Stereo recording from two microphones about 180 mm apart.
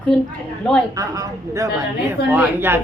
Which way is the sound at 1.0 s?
20° right (ahead or behind).